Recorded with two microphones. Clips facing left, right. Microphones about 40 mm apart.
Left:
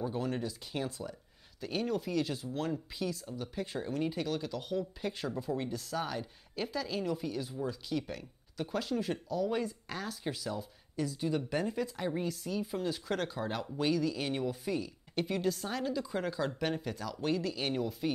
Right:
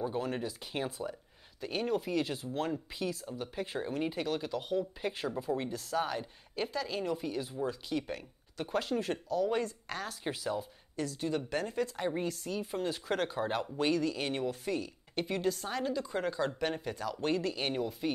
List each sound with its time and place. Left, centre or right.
0.0 s speech: centre
10.2 s speech: centre